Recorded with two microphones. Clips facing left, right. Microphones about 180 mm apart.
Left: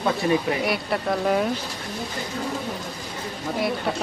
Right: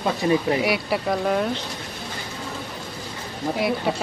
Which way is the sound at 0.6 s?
5° right (ahead or behind).